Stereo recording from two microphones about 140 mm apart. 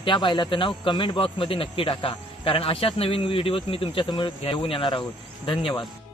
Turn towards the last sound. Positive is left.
turn(degrees=35)  # may be behind; listen again after turning